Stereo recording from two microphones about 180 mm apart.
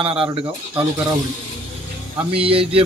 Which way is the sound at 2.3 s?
30° right (ahead or behind).